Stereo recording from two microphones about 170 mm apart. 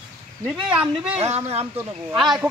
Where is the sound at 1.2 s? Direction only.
40° right (ahead or behind).